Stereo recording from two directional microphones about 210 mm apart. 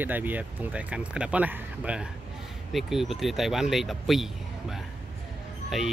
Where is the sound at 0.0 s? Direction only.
10° right (ahead or behind).